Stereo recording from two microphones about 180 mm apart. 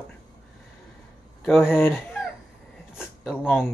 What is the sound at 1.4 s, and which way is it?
Speech, centre (ahead or behind).